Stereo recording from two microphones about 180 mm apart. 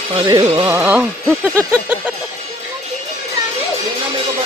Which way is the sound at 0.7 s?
10° right (ahead or behind).